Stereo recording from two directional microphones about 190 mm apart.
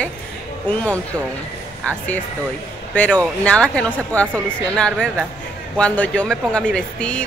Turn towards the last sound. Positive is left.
turn(degrees=5)  # may be behind; listen again after turning